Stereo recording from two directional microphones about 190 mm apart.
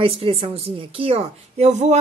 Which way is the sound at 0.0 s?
30° right (ahead or behind).